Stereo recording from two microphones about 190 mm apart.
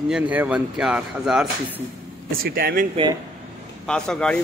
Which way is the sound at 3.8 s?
5° left (ahead or behind).